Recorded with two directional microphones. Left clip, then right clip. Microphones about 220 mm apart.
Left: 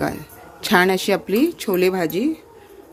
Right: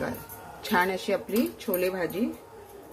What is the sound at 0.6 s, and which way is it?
Speech, 50° left (ahead or behind).